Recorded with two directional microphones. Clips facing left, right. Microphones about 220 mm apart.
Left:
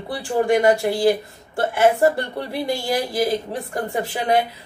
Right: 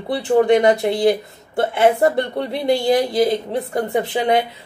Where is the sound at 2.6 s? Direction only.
20° right (ahead or behind).